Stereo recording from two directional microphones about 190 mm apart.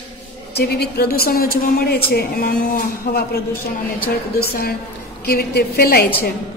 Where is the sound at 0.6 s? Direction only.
55° left (ahead or behind).